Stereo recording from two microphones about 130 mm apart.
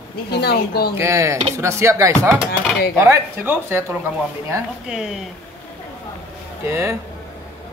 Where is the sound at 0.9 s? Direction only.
20° right (ahead or behind).